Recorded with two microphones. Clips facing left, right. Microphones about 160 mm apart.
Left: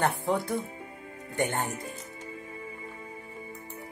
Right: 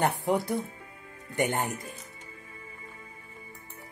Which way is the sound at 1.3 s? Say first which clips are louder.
Right 1 dB; 15° right (ahead or behind).